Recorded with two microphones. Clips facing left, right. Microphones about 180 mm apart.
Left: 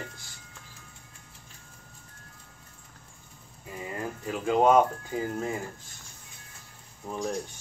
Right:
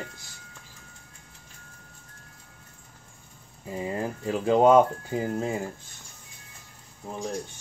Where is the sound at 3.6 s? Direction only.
30° right (ahead or behind).